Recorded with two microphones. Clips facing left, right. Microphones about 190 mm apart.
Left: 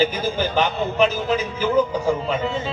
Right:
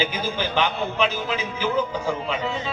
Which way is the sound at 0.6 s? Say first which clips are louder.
Left 4 dB; 40° left (ahead or behind).